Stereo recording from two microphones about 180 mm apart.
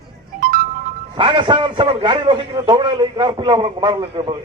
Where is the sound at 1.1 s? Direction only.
25° right (ahead or behind).